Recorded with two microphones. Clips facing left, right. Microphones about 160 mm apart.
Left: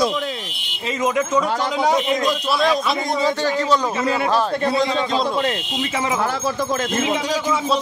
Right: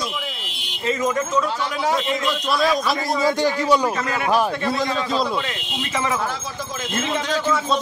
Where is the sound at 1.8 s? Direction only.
20° left (ahead or behind).